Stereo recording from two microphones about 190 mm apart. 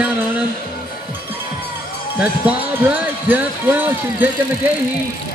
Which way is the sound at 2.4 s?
10° right (ahead or behind).